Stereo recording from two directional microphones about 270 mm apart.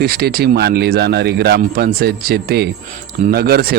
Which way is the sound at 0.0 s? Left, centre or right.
Right.